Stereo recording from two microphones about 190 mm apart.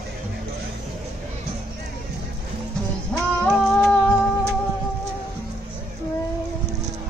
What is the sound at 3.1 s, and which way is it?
Music, 5° left (ahead or behind).